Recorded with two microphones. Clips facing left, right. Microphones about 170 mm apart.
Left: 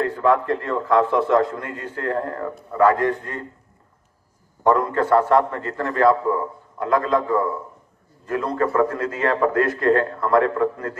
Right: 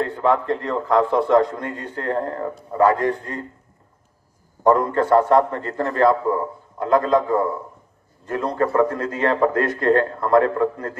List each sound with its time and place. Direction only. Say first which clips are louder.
0.0 s a man's voice: left 1 dB; 25° right (ahead or behind)
0.7 s a man's voice: even; 35° right (ahead or behind)
4.6 s a man's voice: right 1 dB; 35° right (ahead or behind)